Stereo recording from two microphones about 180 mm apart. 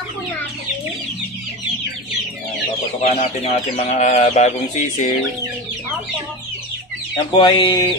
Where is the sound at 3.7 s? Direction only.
40° left (ahead or behind).